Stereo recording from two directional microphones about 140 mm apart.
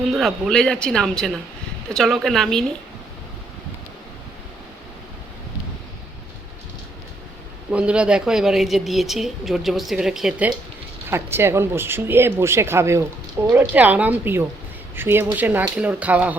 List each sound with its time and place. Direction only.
0.1 s a woman's voice: centre (ahead or behind)
7.7 s a woman's voice: 10° right (ahead or behind)